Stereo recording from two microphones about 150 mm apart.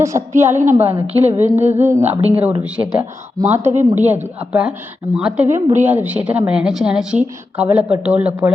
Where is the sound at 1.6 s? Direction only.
50° right (ahead or behind).